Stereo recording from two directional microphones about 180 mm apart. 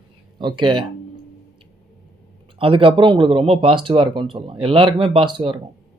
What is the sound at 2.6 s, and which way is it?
Speech, 30° right (ahead or behind).